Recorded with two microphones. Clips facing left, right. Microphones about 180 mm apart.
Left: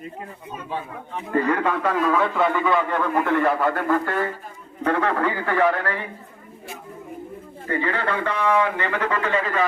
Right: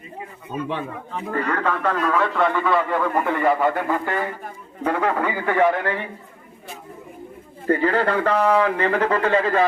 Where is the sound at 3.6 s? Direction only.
15° right (ahead or behind).